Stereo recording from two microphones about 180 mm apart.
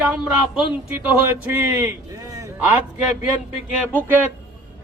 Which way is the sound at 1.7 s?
15° right (ahead or behind).